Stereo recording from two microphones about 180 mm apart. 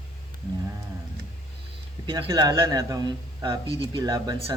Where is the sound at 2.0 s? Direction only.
25° right (ahead or behind).